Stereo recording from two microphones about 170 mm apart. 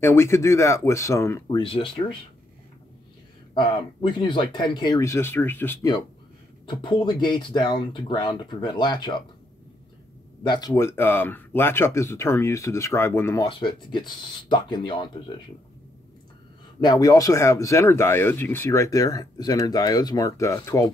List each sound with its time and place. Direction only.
0.0 s speech: 15° left (ahead or behind)
1.6 s speech: 30° left (ahead or behind)
3.5 s speech: 25° left (ahead or behind)
6.6 s speech: 30° left (ahead or behind)
10.4 s speech: 25° left (ahead or behind)
10.7 s speech: 15° left (ahead or behind)
13.5 s speech: 30° left (ahead or behind)
16.8 s speech: 20° left (ahead or behind)